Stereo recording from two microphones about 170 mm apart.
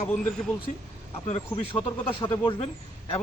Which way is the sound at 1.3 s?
35° left (ahead or behind).